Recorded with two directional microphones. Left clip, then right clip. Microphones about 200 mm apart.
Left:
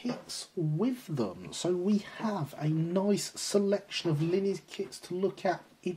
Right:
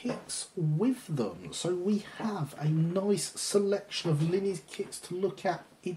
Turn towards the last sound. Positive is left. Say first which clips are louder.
# left 1 dB
turn(degrees=40)  # may be behind; listen again after turning